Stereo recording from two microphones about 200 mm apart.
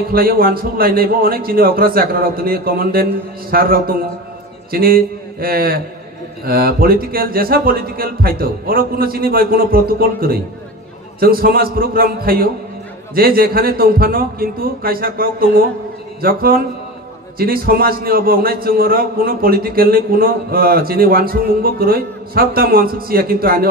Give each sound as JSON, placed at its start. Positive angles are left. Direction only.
{"t": 0.1, "sound": "a man's voice", "side_deg": -45}